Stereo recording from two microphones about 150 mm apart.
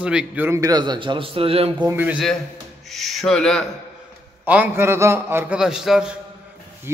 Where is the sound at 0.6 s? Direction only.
25° right (ahead or behind).